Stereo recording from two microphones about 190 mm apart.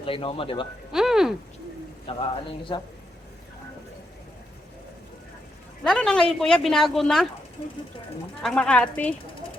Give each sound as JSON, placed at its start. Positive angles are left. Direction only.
{"t": 0.0, "sound": "speech", "side_deg": 25}
{"t": 0.9, "sound": "a sound", "side_deg": 0}
{"t": 2.1, "sound": "speech", "side_deg": 30}
{"t": 5.8, "sound": "speech", "side_deg": 5}
{"t": 8.4, "sound": "speech", "side_deg": 5}